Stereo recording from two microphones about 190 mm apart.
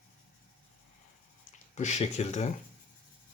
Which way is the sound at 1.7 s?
40° left (ahead or behind).